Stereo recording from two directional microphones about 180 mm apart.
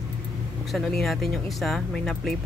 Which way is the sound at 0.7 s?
Centre (ahead or behind).